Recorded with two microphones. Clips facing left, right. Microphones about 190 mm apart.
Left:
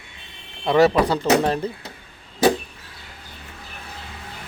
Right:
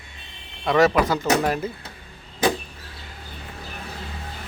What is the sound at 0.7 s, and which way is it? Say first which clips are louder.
Speech: left 2 dB; 30° left (ahead or behind).